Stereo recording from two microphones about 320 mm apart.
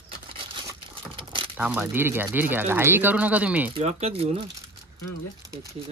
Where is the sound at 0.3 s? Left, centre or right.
Centre.